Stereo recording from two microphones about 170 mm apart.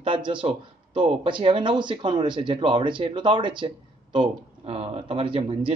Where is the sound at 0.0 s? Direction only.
30° right (ahead or behind).